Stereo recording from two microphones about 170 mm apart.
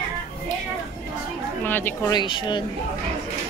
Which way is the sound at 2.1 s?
30° left (ahead or behind).